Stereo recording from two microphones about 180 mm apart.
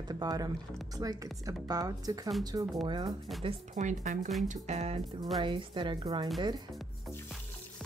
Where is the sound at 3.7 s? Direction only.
45° right (ahead or behind); by 6.3 s 20° right (ahead or behind).